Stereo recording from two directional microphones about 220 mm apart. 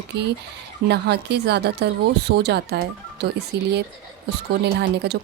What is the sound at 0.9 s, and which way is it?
Speech, 50° right (ahead or behind).